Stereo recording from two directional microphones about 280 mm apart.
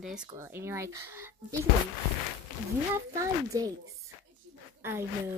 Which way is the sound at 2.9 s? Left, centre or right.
Centre.